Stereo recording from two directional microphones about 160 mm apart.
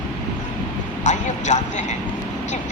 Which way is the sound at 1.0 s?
50° left (ahead or behind).